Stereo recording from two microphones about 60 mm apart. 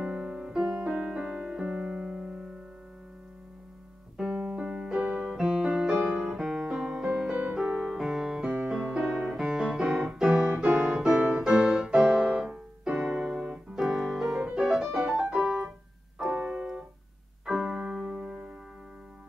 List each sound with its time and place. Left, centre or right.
0.0 s music: centre
0.6 s music: right
1.2 s piano: centre
4.3 s keyboard: right
4.6 s keyboard: centre
5.0 s piano: centre
6.3 s music: centre
8.6 s piano: centre
9.0 s music: centre
9.3 s piano: centre
10.0 s keyboard: centre
10.9 s music: centre
16.4 s keyboard: centre